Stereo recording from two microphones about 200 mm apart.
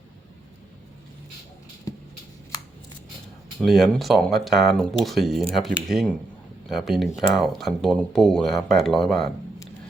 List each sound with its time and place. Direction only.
3.6 s speech: centre (ahead or behind)